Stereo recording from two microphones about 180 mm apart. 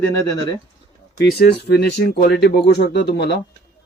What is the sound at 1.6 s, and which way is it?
Speech, 65° left (ahead or behind).